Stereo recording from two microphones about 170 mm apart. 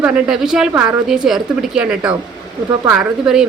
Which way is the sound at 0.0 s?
5° right (ahead or behind).